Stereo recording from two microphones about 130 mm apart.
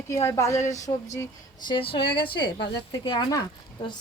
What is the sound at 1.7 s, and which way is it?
A woman's voice, 45° left (ahead or behind).